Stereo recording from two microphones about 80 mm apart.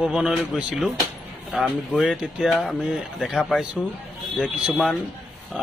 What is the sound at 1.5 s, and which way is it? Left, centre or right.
Speech, centre.